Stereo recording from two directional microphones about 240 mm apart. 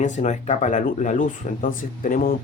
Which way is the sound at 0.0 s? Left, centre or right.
Left.